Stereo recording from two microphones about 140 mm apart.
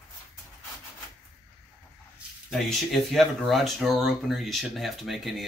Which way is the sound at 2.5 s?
Centre (ahead or behind).